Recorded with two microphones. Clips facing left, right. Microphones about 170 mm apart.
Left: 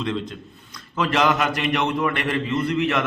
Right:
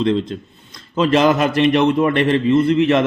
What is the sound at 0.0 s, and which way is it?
A man's voice, 30° right (ahead or behind).